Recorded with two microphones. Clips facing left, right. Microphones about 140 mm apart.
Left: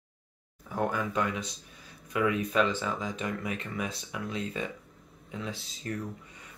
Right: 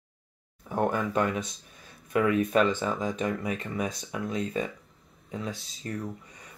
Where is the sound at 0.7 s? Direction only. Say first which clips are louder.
Right 3 dB; 50° right (ahead or behind).